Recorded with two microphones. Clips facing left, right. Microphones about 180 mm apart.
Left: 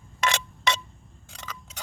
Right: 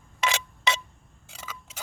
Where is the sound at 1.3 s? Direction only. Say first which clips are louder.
Left 1 dB; 5° right (ahead or behind).